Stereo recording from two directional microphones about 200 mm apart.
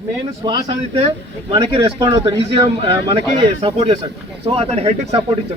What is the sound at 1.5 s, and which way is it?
Speech, 25° right (ahead or behind).